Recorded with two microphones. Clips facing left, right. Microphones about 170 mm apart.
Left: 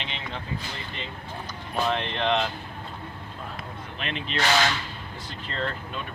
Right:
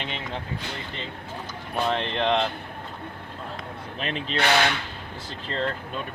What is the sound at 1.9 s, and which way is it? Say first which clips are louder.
Speech: right 2 dB; 30° right (ahead or behind).